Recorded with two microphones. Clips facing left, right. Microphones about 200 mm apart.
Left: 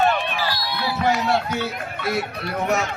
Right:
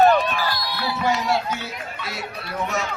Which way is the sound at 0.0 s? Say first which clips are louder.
Right 5 dB; 40° right (ahead or behind).